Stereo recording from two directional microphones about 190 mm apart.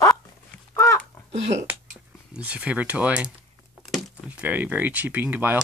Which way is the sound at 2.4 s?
5° right (ahead or behind).